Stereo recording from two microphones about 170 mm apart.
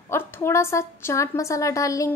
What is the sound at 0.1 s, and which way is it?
A woman's voice, 15° left (ahead or behind).